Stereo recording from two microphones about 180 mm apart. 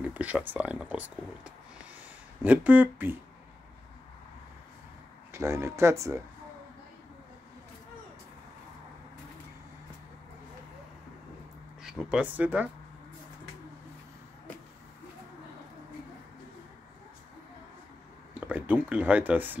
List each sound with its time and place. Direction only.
0.0 s speech: 10° right (ahead or behind)
5.3 s speech: 15° right (ahead or behind)
11.8 s speech: 5° right (ahead or behind)
18.5 s speech: 10° right (ahead or behind)